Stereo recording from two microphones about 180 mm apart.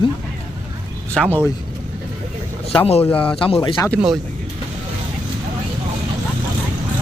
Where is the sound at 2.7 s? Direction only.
30° left (ahead or behind).